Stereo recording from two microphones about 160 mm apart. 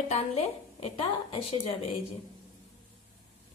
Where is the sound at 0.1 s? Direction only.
40° left (ahead or behind).